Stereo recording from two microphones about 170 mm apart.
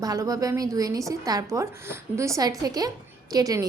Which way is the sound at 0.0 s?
20° right (ahead or behind).